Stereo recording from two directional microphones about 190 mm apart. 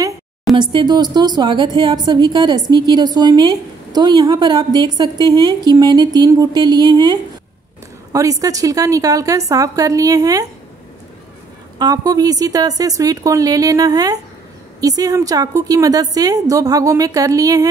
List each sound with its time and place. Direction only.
0.6 s a woman's voice: 25° right (ahead or behind)
11.8 s a woman's voice: 20° right (ahead or behind)